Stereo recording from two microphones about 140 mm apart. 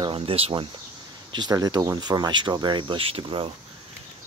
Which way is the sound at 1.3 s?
30° right (ahead or behind).